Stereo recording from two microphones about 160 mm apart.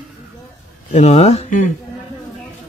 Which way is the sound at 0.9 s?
40° left (ahead or behind).